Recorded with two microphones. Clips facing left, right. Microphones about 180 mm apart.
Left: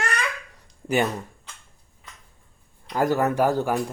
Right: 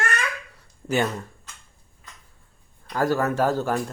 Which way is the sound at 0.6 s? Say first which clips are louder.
Left 1 dB; 15° left (ahead or behind).